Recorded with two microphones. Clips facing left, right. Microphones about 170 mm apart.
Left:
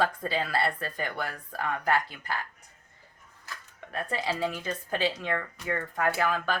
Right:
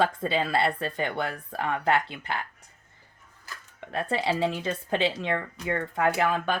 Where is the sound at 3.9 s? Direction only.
30° right (ahead or behind).